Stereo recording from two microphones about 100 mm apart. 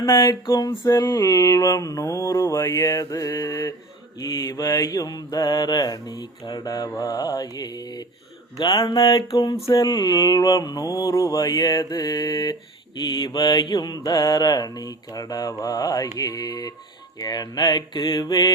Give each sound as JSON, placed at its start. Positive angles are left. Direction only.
{"t": 0.2, "sound": "mantra", "side_deg": 35}
{"t": 9.0, "sound": "a sound", "side_deg": 55}
{"t": 9.4, "sound": "mantra", "side_deg": 35}
{"t": 9.8, "sound": "mantra", "side_deg": 45}